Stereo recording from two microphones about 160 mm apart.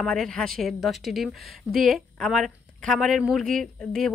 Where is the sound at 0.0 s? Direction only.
5° left (ahead or behind).